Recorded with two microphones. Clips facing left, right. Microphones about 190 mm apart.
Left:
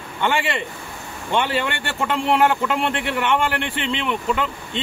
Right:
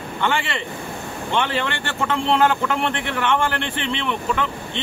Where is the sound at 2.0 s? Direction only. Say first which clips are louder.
Even; 15° left (ahead or behind).